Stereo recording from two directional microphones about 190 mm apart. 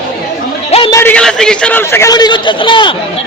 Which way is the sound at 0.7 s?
25° left (ahead or behind).